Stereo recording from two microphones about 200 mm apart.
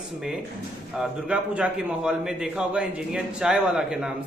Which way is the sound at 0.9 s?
5° right (ahead or behind).